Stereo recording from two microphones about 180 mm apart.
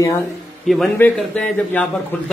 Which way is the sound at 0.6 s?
Centre (ahead or behind).